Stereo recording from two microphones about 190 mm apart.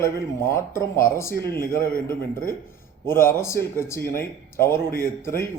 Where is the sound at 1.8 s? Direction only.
50° left (ahead or behind).